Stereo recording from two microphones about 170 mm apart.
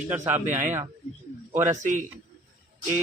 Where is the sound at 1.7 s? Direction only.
50° right (ahead or behind).